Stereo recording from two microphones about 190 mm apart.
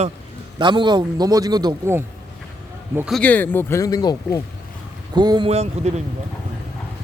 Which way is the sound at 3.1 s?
5° left (ahead or behind).